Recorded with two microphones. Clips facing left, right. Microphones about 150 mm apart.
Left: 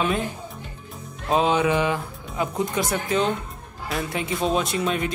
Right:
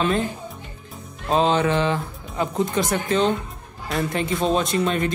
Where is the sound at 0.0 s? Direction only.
Centre (ahead or behind).